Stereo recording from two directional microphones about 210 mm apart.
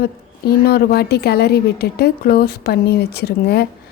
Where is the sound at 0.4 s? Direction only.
50° left (ahead or behind).